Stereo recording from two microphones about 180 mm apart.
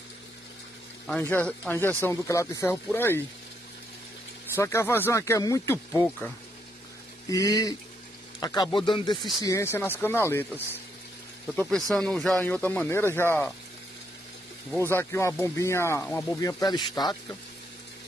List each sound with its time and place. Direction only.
1.2 s speech: 10° left (ahead or behind)
4.6 s speech: 15° left (ahead or behind)
7.2 s speech: 20° left (ahead or behind)
14.8 s speech: 15° left (ahead or behind)